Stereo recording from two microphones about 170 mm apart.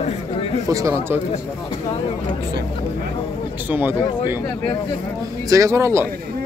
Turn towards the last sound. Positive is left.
turn(degrees=-15)  # may be behind; listen again after turning